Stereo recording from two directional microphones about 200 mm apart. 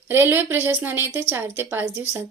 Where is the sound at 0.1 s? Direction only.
10° right (ahead or behind).